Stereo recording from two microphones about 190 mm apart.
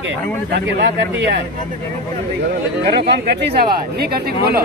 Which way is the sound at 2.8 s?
60° right (ahead or behind).